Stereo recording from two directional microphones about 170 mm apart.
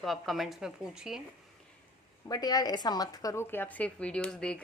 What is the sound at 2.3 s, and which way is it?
A woman's voice, 20° left (ahead or behind).